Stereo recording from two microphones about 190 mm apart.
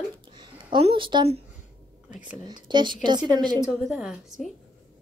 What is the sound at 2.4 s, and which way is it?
Speech, 25° right (ahead or behind).